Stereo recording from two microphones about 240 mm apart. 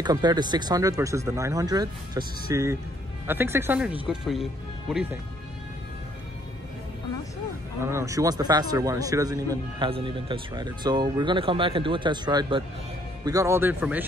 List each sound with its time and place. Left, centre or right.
0.0 s a man's voice: centre
7.8 s a man's voice: centre